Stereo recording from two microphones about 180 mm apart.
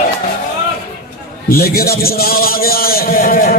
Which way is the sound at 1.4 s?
55° left (ahead or behind).